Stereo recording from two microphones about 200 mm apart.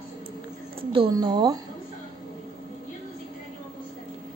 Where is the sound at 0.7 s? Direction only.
25° right (ahead or behind).